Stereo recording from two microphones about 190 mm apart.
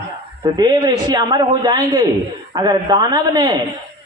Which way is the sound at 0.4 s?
20° right (ahead or behind).